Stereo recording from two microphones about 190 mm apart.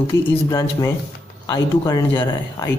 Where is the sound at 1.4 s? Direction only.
20° left (ahead or behind).